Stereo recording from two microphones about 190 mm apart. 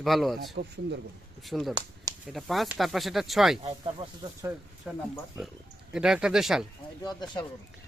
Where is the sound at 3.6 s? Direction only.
30° right (ahead or behind).